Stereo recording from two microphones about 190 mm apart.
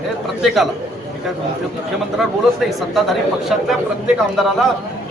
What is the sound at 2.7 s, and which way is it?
Speech, centre (ahead or behind).